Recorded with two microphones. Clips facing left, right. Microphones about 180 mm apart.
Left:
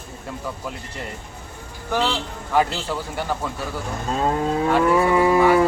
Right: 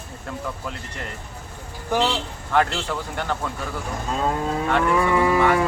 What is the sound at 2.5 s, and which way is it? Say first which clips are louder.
A man's voice: left 1 dB; 10° left (ahead or behind).